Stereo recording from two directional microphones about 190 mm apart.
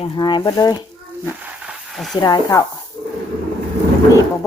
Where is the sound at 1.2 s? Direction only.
10° right (ahead or behind).